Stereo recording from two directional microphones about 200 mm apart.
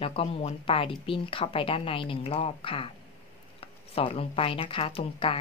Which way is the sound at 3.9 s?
30° left (ahead or behind).